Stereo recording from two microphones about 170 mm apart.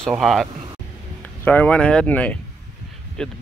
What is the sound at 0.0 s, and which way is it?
Speech, centre (ahead or behind).